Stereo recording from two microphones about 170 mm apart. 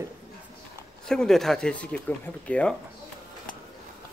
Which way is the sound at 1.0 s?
5° left (ahead or behind).